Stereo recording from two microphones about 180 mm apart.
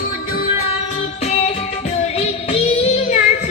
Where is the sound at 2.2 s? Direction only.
35° left (ahead or behind).